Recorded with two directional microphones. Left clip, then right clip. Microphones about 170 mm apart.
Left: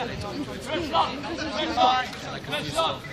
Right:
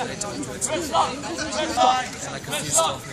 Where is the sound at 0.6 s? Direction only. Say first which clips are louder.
Right 3 dB; 30° right (ahead or behind).